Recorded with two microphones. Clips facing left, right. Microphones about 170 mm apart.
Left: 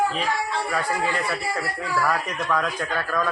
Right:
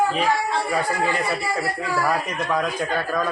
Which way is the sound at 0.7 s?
10° right (ahead or behind).